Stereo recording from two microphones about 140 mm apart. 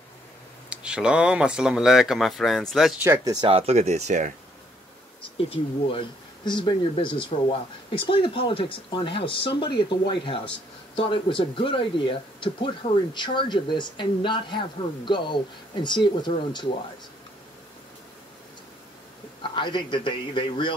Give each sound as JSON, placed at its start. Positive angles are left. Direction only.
{"t": 0.7, "sound": "speech", "side_deg": -5}
{"t": 3.0, "sound": "speech", "side_deg": -15}
{"t": 3.3, "sound": "speech", "side_deg": -40}
{"t": 5.4, "sound": "speech", "side_deg": 40}
{"t": 19.4, "sound": "speech", "side_deg": 35}